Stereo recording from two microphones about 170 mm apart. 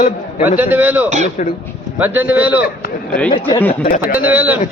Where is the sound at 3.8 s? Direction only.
55° left (ahead or behind).